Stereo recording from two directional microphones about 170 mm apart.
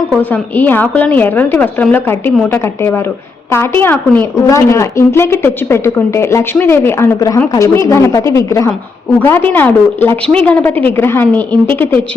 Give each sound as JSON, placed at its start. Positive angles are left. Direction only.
{"t": 0.1, "sound": "a woman's voice", "side_deg": 10}